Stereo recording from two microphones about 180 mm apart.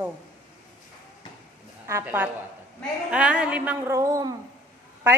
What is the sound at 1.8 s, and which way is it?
A woman's voice, 15° right (ahead or behind).